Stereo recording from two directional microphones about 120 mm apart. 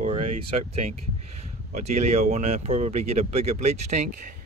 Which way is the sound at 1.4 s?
65° right (ahead or behind).